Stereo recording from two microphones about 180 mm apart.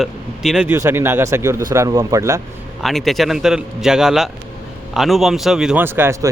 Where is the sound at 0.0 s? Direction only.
5° right (ahead or behind).